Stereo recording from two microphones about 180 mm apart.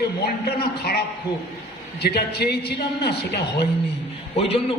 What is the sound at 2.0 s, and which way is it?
Speech, 65° left (ahead or behind).